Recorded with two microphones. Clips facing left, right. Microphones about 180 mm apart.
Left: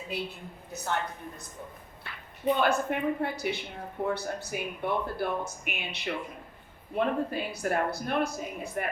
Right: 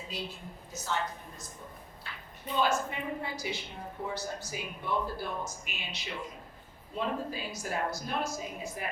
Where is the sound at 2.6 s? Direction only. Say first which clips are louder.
Left 3 dB; 60° left (ahead or behind).